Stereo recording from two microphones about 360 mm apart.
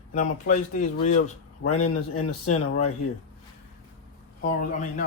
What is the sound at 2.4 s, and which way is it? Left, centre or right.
Speech, left.